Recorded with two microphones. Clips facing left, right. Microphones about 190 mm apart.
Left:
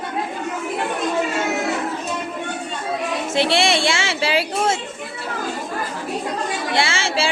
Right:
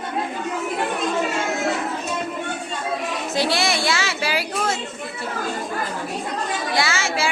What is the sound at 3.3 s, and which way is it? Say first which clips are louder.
A woman's voice: left 3 dB; 25° left (ahead or behind).